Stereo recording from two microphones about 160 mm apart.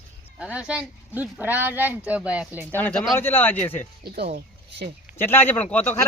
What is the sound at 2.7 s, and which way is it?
A woman's voice, 10° left (ahead or behind).